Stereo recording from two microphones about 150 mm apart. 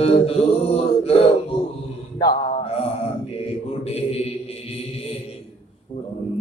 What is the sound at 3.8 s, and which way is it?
Mantra, 45° left (ahead or behind).